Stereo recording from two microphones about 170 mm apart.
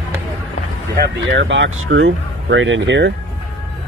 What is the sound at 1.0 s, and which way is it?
Speech, 90° right.